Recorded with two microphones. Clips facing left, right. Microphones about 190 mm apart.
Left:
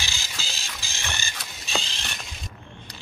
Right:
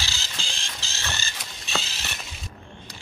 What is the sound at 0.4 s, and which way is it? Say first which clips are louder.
Printer: even; 5° left (ahead or behind).